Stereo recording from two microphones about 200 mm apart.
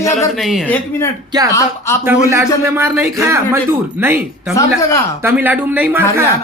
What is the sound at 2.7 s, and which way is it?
A man's voice, 10° right (ahead or behind).